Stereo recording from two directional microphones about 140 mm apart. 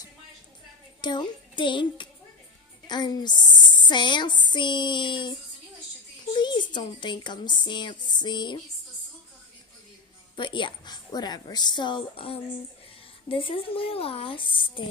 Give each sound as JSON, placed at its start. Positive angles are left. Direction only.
{"t": 1.0, "sound": "a child's voice", "side_deg": 35}
{"t": 10.3, "sound": "speech", "side_deg": 35}